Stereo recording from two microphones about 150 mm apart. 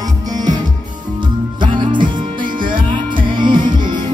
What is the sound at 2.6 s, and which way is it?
Music, 65° right (ahead or behind).